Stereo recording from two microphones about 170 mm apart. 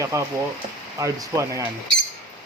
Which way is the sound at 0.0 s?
15° right (ahead or behind).